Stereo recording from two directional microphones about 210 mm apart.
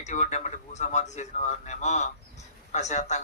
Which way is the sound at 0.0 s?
35° left (ahead or behind).